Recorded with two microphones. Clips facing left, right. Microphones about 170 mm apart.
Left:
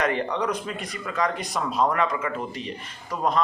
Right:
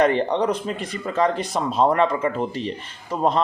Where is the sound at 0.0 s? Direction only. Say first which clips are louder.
Right 6 dB; 30° right (ahead or behind).